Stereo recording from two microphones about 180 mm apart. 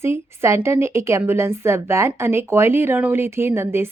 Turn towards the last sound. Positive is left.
turn(degrees=-15)  # may be behind; listen again after turning